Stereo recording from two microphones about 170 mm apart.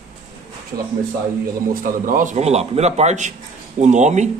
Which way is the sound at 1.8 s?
55° right (ahead or behind).